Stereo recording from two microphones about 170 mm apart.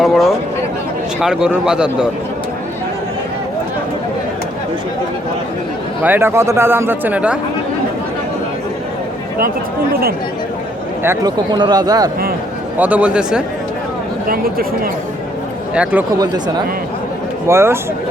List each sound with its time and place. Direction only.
0.0 s speech: centre (ahead or behind)
6.0 s a man's voice: 10° right (ahead or behind)
9.9 s speech: 60° right (ahead or behind)
11.0 s speech: 20° right (ahead or behind)
12.7 s a man's voice: 10° right (ahead or behind)
14.3 s speech: 60° right (ahead or behind)
15.7 s a man's voice: 10° right (ahead or behind)
16.2 s a man's voice: 25° right (ahead or behind)